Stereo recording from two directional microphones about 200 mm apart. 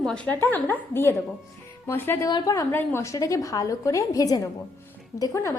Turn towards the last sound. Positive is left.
turn(degrees=15)  # may be behind; listen again after turning